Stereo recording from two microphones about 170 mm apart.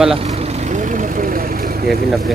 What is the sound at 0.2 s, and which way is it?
Vehicle, 40° right (ahead or behind).